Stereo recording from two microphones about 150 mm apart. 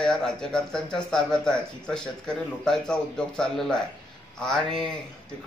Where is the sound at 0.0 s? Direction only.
5° left (ahead or behind).